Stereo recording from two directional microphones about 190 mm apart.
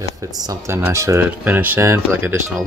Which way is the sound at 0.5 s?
15° right (ahead or behind).